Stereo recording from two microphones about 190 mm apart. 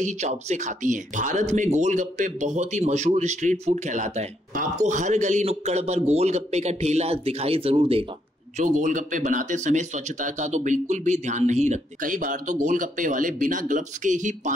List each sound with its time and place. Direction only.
0.0 s speech: 35° right (ahead or behind)
8.5 s speech: 40° right (ahead or behind)